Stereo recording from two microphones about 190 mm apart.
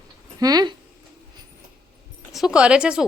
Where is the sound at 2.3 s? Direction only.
Centre (ahead or behind).